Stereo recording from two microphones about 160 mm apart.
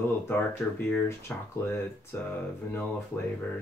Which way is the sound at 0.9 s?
15° left (ahead or behind).